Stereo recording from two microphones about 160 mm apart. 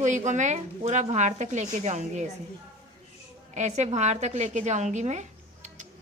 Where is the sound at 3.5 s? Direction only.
45° right (ahead or behind).